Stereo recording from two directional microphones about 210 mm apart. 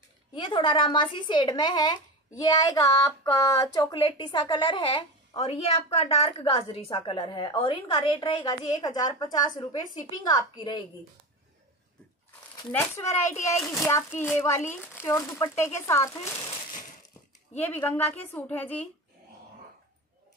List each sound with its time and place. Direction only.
0.3 s a woman's voice: 20° left (ahead or behind)
12.3 s a sound: 10° left (ahead or behind)
13.7 s a woman's voice: 15° left (ahead or behind)
17.6 s a woman's voice: 10° left (ahead or behind)